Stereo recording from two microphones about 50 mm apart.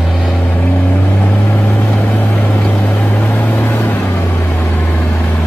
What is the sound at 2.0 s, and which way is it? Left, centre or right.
Vehicle, left.